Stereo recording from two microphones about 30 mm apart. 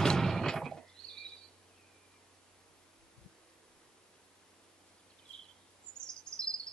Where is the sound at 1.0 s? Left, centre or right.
Left.